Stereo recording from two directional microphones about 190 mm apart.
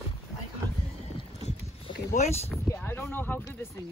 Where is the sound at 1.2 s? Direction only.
35° left (ahead or behind).